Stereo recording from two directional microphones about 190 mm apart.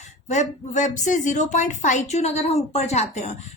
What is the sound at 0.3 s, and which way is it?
Speech, 40° left (ahead or behind).